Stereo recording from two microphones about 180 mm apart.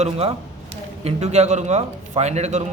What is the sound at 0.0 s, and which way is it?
A man's voice, 35° right (ahead or behind).